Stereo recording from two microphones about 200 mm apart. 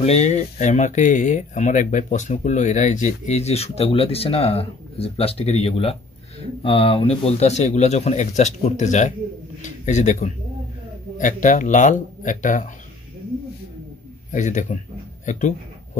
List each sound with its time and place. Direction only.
0.0 s a man's voice: 30° left (ahead or behind)
14.3 s speech: 40° left (ahead or behind)